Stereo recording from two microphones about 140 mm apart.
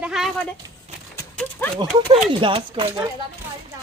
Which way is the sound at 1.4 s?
10° left (ahead or behind).